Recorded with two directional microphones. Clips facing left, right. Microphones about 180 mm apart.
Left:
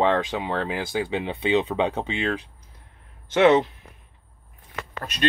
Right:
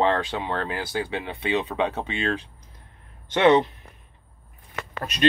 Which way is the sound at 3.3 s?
5° left (ahead or behind).